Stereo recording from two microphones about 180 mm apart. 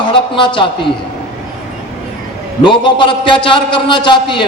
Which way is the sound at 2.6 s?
25° left (ahead or behind).